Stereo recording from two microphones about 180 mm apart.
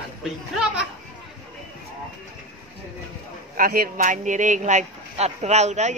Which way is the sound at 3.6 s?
55° right (ahead or behind).